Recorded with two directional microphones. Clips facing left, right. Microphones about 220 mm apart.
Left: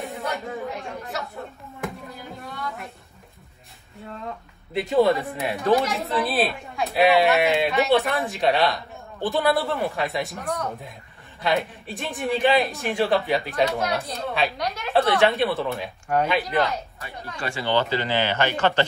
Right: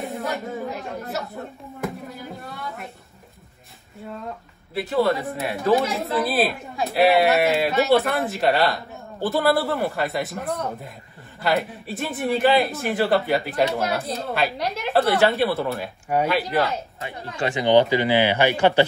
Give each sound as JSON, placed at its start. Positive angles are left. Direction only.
{"t": 0.0, "sound": "speech", "side_deg": 0}
{"t": 4.0, "sound": "a woman's voice", "side_deg": -5}
{"t": 14.6, "sound": "a woman's voice", "side_deg": -30}
{"t": 14.9, "sound": "a woman's voice", "side_deg": 0}
{"t": 16.6, "sound": "speech", "side_deg": -25}